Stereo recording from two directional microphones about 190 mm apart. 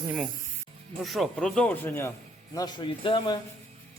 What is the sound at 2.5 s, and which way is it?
Speech, 20° left (ahead or behind).